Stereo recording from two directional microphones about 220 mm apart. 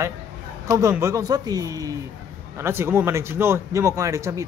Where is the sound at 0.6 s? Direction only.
15° right (ahead or behind).